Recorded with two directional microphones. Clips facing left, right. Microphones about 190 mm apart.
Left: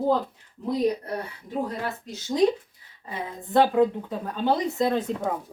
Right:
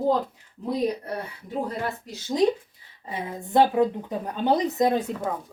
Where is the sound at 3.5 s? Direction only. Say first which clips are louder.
Even; 15° right (ahead or behind).